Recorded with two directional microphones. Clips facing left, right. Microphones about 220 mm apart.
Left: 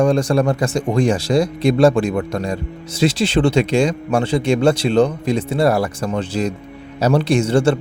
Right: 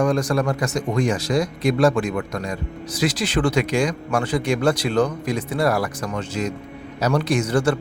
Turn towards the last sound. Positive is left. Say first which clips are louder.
# left 5 dB
turn(degrees=25)  # may be behind; listen again after turning